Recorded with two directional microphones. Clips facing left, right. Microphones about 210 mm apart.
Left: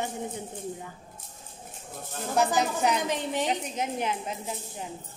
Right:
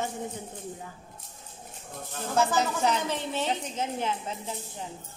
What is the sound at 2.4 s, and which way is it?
A woman's voice, 15° left (ahead or behind).